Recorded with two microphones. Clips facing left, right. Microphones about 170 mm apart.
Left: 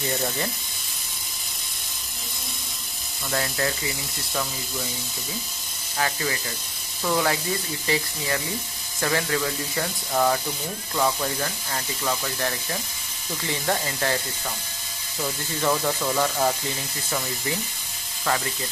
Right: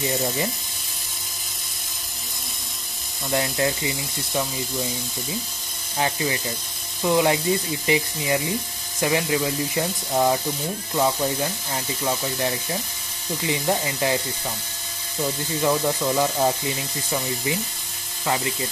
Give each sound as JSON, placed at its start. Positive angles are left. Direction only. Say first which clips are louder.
{"t": 3.3, "sound": "speech", "louder": "right 4 dB", "side_deg": -20}
{"t": 5.9, "sound": "speech", "louder": "right 3 dB", "side_deg": -20}
{"t": 15.6, "sound": "speech", "louder": "right 2 dB", "side_deg": -10}
{"t": 18.2, "sound": "speech", "louder": "right 1 dB", "side_deg": -15}